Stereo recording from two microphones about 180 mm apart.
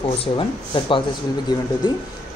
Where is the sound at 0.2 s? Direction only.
30° left (ahead or behind).